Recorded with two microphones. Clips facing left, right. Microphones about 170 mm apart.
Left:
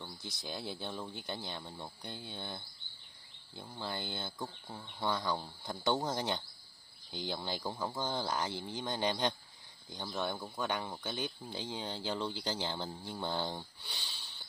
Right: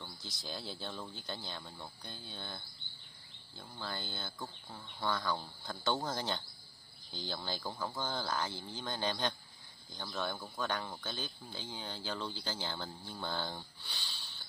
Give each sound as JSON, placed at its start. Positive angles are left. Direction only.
{"t": 0.2, "sound": "speech", "side_deg": 60}
{"t": 0.5, "sound": "speech", "side_deg": 15}